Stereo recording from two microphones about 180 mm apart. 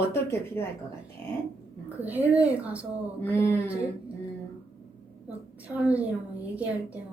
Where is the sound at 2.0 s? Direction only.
10° right (ahead or behind).